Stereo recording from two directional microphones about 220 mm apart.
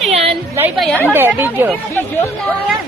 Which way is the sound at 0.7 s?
5° left (ahead or behind).